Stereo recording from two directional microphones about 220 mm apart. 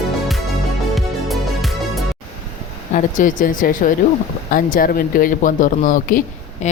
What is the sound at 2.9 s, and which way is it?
Speech, 35° left (ahead or behind).